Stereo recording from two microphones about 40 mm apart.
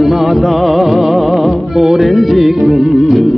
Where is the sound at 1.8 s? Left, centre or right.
Right.